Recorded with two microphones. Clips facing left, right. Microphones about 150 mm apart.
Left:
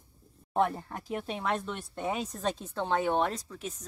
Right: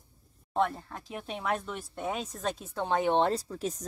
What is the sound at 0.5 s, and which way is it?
Speech, 10° left (ahead or behind).